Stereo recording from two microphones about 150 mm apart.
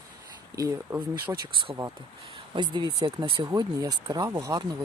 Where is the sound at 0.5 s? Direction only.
20° right (ahead or behind).